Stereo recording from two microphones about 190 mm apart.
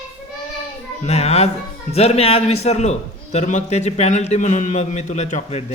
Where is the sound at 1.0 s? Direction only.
35° left (ahead or behind).